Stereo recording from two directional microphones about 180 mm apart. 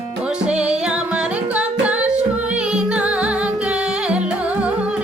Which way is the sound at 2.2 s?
40° right (ahead or behind).